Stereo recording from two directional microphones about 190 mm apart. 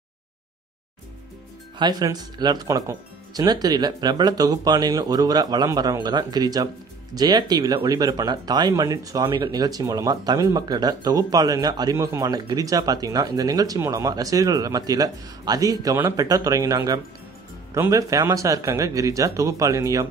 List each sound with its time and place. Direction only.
1.8 s speech: 20° right (ahead or behind)